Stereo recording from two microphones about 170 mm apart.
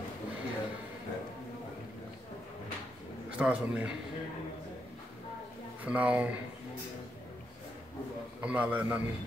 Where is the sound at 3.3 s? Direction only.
5° right (ahead or behind).